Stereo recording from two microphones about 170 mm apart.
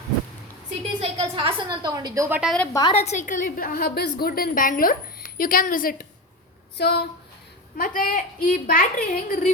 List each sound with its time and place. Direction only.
0.9 s a woman's voice: 35° right (ahead or behind)
2.3 s a woman's voice: 5° right (ahead or behind)
2.7 s a woman's voice: 25° left (ahead or behind)
3.0 s a woman's voice: 45° left (ahead or behind)
6.7 s speech: 75° left (ahead or behind)
7.8 s a woman's voice: 50° left (ahead or behind)